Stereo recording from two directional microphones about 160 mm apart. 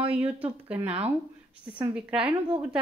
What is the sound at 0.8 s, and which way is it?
Speech, 40° right (ahead or behind).